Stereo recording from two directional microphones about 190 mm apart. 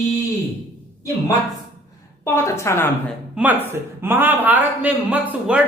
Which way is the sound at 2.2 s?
15° left (ahead or behind).